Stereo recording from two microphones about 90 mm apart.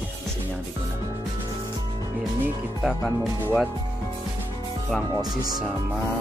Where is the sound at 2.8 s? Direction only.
Centre (ahead or behind).